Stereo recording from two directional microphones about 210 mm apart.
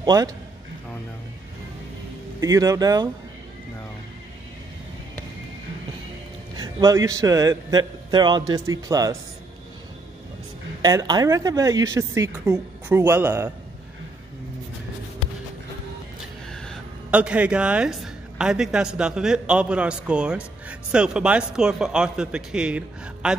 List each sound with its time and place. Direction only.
0.0 s a man's voice: 20° right (ahead or behind)
2.4 s a woman's voice: 15° right (ahead or behind)
6.5 s a woman's voice: 20° right (ahead or behind)
10.8 s a woman's voice: 20° right (ahead or behind)
16.5 s speech: centre (ahead or behind)